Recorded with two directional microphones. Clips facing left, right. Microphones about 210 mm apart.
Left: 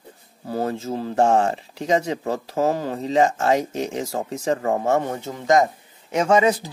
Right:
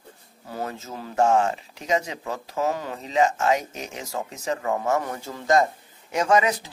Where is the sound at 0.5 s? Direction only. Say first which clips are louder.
Left 8 dB; 30° left (ahead or behind).